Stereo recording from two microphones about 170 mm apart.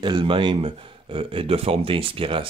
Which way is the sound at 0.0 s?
30° right (ahead or behind).